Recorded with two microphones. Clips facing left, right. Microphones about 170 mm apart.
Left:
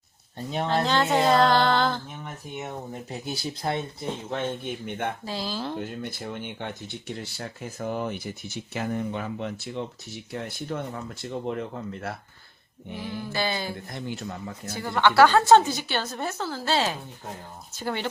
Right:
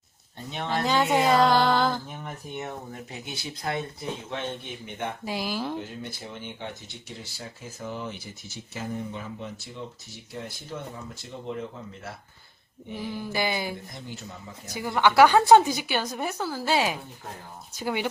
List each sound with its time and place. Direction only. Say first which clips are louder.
0.5 s speech: left 4 dB; 35° left (ahead or behind)
0.9 s a woman's voice: right 1 dB; 10° right (ahead or behind)
3.1 s speech: left 5 dB; 35° left (ahead or behind)
4.6 s speech: left 5 dB; 50° left (ahead or behind)
5.2 s a woman's voice: right 1 dB; 15° right (ahead or behind)
5.8 s speech: left 4 dB; 55° left (ahead or behind)
13.0 s a woman's voice: even; 15° right (ahead or behind)
13.9 s speech: left 6 dB; 65° left (ahead or behind)
14.7 s a woman's voice: even; 10° right (ahead or behind)